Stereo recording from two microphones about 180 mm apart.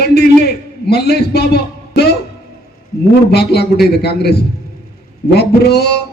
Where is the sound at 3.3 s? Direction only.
65° left (ahead or behind).